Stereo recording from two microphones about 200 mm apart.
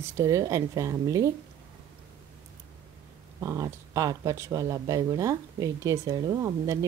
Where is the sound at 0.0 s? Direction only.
15° right (ahead or behind).